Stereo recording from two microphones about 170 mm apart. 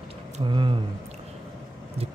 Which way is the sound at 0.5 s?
30° right (ahead or behind).